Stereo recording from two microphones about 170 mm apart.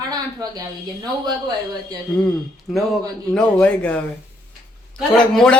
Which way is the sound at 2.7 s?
Centre (ahead or behind).